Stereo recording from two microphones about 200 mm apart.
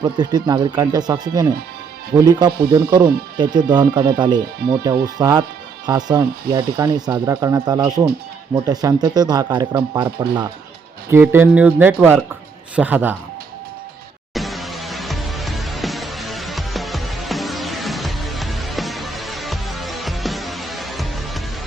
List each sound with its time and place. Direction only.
0.0 s speech: 20° right (ahead or behind)
14.3 s music: centre (ahead or behind)